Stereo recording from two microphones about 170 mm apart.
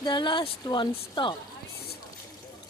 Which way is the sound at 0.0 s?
25° left (ahead or behind).